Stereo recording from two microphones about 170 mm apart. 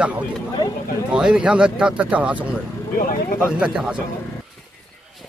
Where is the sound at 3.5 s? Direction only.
5° right (ahead or behind).